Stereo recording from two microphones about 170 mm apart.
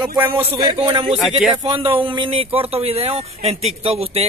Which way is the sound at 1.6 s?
30° right (ahead or behind).